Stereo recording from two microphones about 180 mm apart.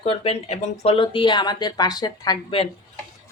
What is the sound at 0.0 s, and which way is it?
Speech, 35° left (ahead or behind).